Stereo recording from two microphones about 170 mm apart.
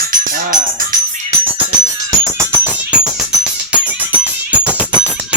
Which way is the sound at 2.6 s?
5° right (ahead or behind).